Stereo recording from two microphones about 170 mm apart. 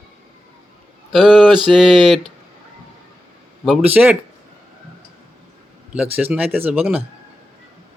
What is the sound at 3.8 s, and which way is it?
Speech, 10° right (ahead or behind).